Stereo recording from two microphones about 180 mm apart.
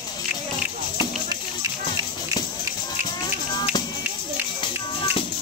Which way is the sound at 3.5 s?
25° left (ahead or behind).